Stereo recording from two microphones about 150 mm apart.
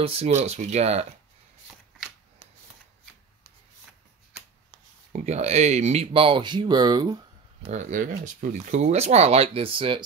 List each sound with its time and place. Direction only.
0.0 s speech: 40° right (ahead or behind)
5.1 s speech: 45° right (ahead or behind); by 7.2 s 25° right (ahead or behind)
7.6 s speech: 50° right (ahead or behind); by 10.0 s 35° right (ahead or behind)